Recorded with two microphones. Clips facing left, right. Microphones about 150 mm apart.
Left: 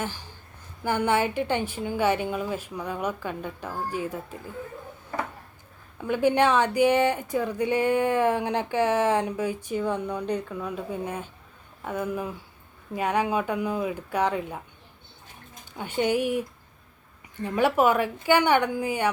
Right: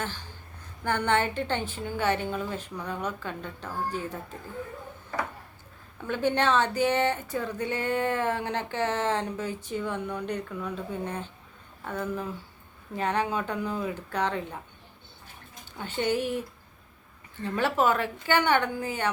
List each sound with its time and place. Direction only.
0.0 s speech: 10° left (ahead or behind)
6.0 s speech: 10° left (ahead or behind)
15.8 s speech: 15° left (ahead or behind)